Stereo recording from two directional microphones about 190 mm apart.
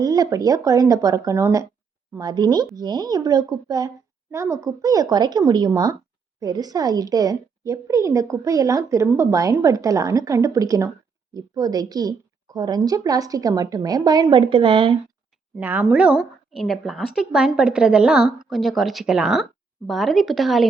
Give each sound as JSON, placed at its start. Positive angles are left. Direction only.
{"t": 0.0, "sound": "a woman's voice", "side_deg": -20}
{"t": 15.5, "sound": "a woman's voice", "side_deg": -10}